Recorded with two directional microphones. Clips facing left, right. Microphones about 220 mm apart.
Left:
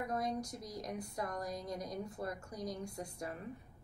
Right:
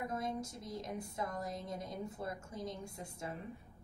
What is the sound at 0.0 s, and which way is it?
A woman's voice, 25° right (ahead or behind).